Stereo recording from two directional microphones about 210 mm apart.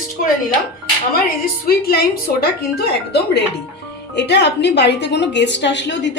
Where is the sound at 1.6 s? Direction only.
45° left (ahead or behind).